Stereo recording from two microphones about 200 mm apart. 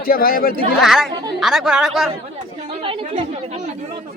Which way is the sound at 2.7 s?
30° right (ahead or behind).